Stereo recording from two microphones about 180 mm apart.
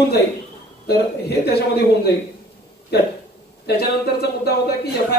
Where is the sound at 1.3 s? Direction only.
65° left (ahead or behind).